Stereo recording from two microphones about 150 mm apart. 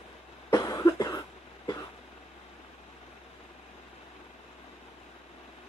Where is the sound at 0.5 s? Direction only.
25° left (ahead or behind).